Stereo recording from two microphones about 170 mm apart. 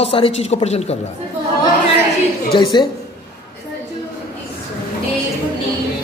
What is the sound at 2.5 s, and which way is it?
Speech, 25° left (ahead or behind).